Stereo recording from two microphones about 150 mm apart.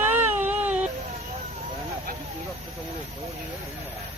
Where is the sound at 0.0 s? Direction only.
10° right (ahead or behind).